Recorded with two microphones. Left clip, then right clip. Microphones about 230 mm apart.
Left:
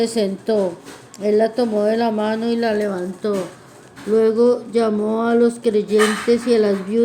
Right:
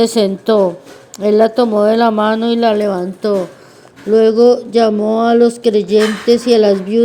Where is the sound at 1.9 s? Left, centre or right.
Right.